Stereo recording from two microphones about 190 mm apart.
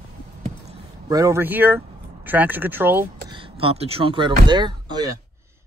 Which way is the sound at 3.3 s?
30° right (ahead or behind).